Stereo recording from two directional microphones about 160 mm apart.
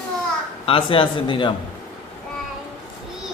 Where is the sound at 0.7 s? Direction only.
35° left (ahead or behind).